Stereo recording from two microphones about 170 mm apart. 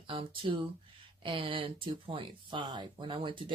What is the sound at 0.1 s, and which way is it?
Speech, 30° right (ahead or behind).